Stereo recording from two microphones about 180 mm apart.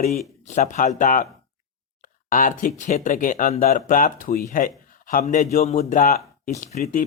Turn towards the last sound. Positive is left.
turn(degrees=40)  # may be behind; listen again after turning